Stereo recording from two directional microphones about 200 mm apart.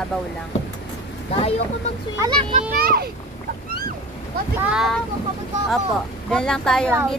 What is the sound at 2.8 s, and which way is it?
Speech, 50° right (ahead or behind).